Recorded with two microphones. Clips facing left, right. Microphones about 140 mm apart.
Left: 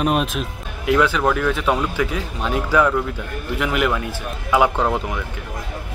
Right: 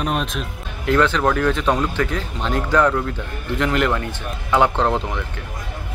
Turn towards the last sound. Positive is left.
turn(degrees=5)  # may be behind; listen again after turning